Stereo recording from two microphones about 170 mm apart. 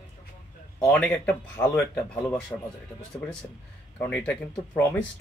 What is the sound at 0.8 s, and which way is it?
Speech, 5° left (ahead or behind).